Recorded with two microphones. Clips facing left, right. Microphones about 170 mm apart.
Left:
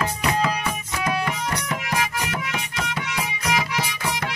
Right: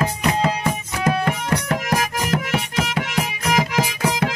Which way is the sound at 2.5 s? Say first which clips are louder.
Right 6 dB; 75° right (ahead or behind).